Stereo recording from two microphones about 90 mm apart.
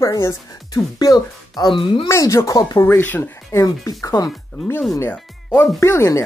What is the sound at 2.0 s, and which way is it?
Speech, 35° left (ahead or behind).